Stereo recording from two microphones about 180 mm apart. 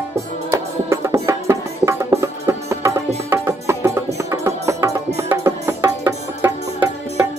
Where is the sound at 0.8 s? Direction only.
15° right (ahead or behind).